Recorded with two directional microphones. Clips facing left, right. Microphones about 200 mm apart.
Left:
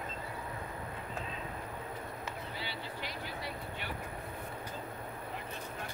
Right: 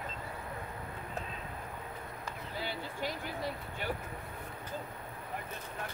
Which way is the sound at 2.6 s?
45° right (ahead or behind).